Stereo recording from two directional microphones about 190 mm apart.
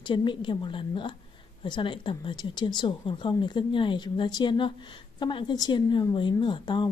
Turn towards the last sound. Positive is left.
turn(degrees=25)  # may be behind; listen again after turning